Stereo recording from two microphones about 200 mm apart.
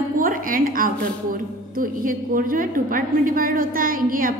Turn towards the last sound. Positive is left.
turn(degrees=-45)  # may be behind; listen again after turning